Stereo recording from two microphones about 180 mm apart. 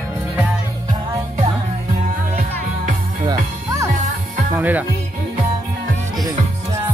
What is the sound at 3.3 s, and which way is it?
Music, 15° right (ahead or behind).